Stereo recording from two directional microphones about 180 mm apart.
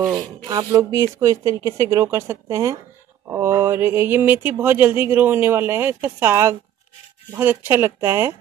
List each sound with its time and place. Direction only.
0.0 s speech: 20° right (ahead or behind)